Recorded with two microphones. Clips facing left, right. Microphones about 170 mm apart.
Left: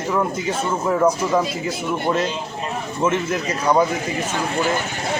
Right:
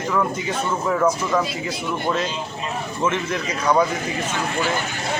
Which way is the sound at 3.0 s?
10° left (ahead or behind).